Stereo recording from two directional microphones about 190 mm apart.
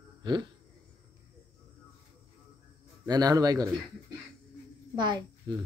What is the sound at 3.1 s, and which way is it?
Speech, 20° right (ahead or behind).